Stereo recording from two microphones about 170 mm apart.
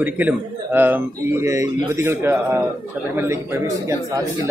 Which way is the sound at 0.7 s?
10° right (ahead or behind).